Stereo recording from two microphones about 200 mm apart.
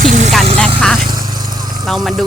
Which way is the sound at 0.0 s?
40° right (ahead or behind).